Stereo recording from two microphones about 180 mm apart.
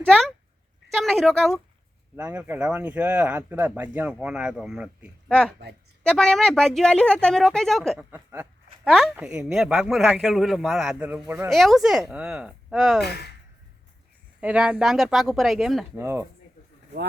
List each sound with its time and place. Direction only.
0.1 s speech: centre (ahead or behind)
8.1 s speech: 10° right (ahead or behind)
8.8 s speech: centre (ahead or behind)
11.4 s speech: centre (ahead or behind)
13.0 s speech: 65° left (ahead or behind)
14.4 s speech: 5° right (ahead or behind)
16.0 s speech: 15° right (ahead or behind)